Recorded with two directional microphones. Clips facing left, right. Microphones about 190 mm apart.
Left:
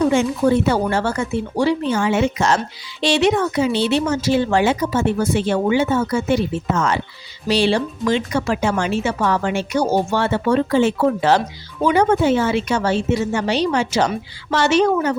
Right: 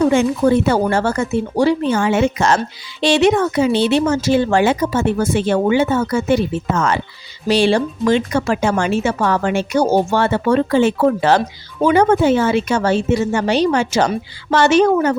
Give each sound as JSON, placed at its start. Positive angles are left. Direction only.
{"t": 0.1, "sound": "speech", "side_deg": -55}